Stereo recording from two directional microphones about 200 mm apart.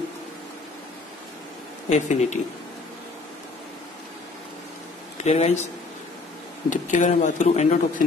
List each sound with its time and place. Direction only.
1.9 s speech: 35° left (ahead or behind)
5.1 s speech: 35° left (ahead or behind)
6.7 s speech: 40° left (ahead or behind)